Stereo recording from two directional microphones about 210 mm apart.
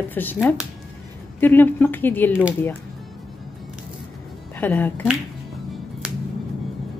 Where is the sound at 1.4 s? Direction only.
10° left (ahead or behind).